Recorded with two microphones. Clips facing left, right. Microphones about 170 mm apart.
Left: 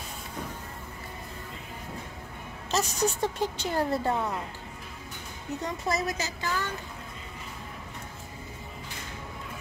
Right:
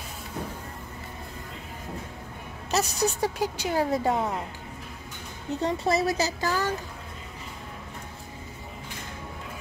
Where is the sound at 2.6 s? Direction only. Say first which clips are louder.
Right 2 dB; 10° right (ahead or behind).